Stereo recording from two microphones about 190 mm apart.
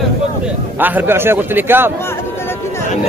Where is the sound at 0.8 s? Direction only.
10° right (ahead or behind).